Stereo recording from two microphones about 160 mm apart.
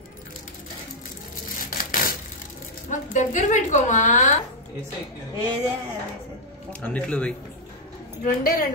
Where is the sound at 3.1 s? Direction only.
50° left (ahead or behind).